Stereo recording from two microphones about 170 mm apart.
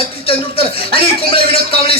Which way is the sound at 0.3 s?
35° left (ahead or behind).